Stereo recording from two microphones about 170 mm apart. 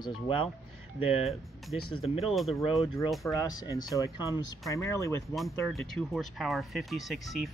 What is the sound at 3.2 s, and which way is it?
Speech, 10° left (ahead or behind).